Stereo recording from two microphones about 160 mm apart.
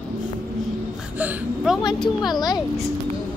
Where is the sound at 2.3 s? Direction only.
25° left (ahead or behind).